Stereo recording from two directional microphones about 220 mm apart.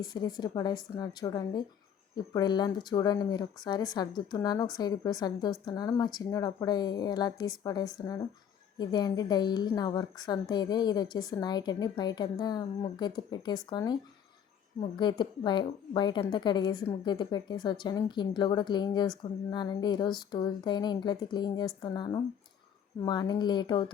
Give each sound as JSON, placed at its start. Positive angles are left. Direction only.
{"t": 0.0, "sound": "a woman's voice", "side_deg": 20}